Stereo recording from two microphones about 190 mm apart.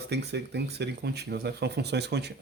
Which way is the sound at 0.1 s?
60° right (ahead or behind).